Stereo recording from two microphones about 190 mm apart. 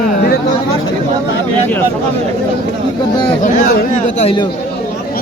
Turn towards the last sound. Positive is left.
turn(degrees=30)  # may be behind; listen again after turning